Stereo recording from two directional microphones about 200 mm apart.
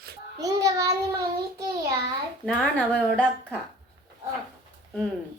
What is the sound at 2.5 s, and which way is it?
Speech, 5° left (ahead or behind).